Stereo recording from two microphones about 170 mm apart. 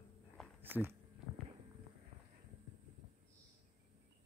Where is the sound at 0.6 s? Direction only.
10° right (ahead or behind).